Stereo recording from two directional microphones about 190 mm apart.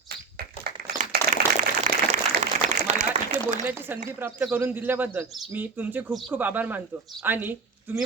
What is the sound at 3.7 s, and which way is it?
A man's voice, 10° right (ahead or behind).